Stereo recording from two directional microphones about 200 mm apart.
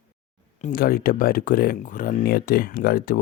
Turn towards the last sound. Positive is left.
turn(degrees=45)  # may be behind; listen again after turning